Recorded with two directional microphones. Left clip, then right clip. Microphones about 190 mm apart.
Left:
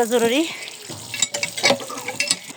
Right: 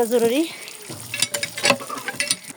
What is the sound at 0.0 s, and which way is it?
Speech, 5° right (ahead or behind).